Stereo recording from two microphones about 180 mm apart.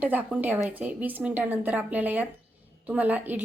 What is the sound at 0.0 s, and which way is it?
A woman's voice, 10° right (ahead or behind).